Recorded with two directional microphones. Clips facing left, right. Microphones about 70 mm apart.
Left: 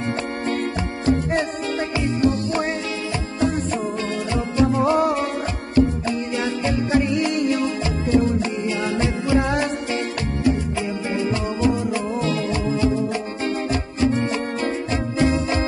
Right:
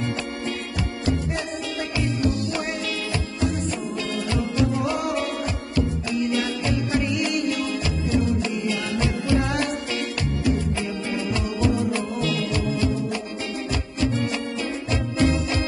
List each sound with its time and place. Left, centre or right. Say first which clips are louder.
0.5 s music: left 5 dB; left
11.1 s music: left 3 dB; left